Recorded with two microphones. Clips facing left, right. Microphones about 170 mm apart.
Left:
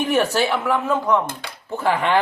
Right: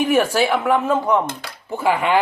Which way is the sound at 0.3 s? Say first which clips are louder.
Right 3 dB; 10° right (ahead or behind).